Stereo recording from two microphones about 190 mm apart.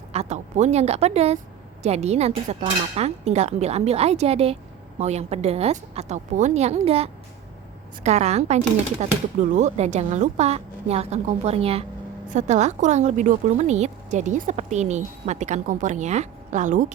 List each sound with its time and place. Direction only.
0.1 s a woman's voice: 35° right (ahead or behind)